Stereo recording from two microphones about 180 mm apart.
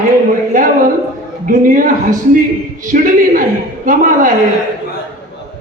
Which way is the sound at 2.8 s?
50° right (ahead or behind).